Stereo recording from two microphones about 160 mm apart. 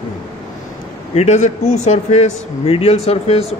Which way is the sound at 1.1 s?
45° left (ahead or behind).